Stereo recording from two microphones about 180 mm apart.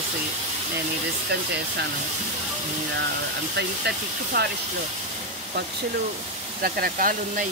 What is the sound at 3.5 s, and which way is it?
Speech, 65° right (ahead or behind).